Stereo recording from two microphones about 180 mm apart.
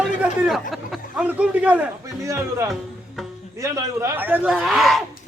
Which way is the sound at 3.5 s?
15° right (ahead or behind).